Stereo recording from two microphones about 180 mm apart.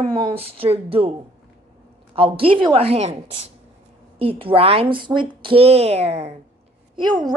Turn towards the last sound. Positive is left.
turn(degrees=-25)  # may be behind; listen again after turning